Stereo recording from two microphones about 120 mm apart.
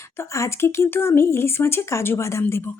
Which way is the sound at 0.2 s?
25° left (ahead or behind).